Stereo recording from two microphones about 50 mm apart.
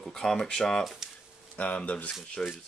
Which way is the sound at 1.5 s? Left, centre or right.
Left.